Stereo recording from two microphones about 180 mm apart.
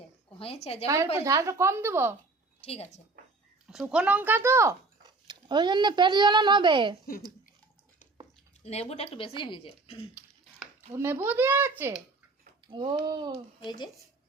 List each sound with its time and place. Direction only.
0.3 s speech: 30° left (ahead or behind)
1.1 s speech: 15° right (ahead or behind)
2.6 s speech: 35° left (ahead or behind)
3.7 s speech: 5° right (ahead or behind); by 6.9 s 25° right (ahead or behind)
8.6 s speech: 35° left (ahead or behind)
10.9 s speech: 15° right (ahead or behind)
12.6 s speech: 25° right (ahead or behind)
13.7 s speech: 25° left (ahead or behind)